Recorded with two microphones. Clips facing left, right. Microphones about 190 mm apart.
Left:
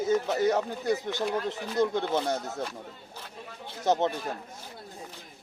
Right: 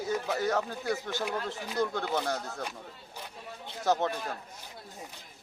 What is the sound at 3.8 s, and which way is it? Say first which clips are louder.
Speech: left 2 dB; 20° left (ahead or behind).